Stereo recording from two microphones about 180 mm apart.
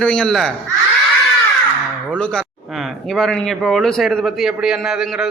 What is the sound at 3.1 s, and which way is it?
A man's voice, centre (ahead or behind).